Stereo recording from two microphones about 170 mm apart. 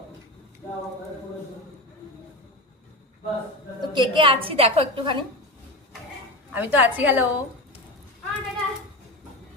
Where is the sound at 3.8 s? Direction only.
25° right (ahead or behind).